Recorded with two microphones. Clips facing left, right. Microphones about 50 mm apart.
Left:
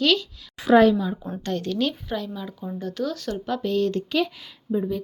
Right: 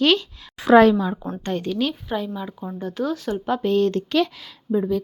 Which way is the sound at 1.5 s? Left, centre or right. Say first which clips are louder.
Right 1 dB; centre.